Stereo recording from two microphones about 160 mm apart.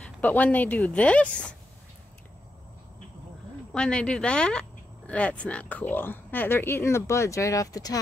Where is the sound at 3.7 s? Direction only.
5° left (ahead or behind).